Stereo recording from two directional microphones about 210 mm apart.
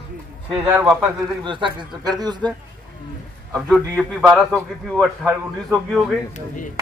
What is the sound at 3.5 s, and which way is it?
A man's voice, 5° left (ahead or behind).